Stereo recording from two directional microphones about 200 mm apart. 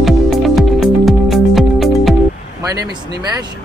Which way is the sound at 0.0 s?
Centre (ahead or behind).